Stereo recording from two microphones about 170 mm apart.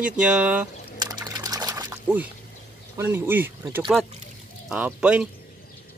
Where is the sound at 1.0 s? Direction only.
25° right (ahead or behind).